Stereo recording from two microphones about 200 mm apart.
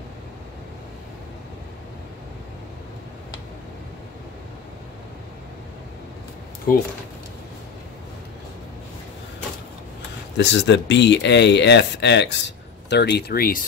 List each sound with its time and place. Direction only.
6.7 s speech: 45° left (ahead or behind)
10.3 s speech: 60° left (ahead or behind); by 13.7 s 45° left (ahead or behind)